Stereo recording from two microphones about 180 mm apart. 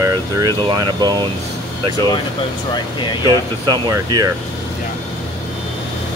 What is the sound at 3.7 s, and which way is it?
Speech, 20° right (ahead or behind).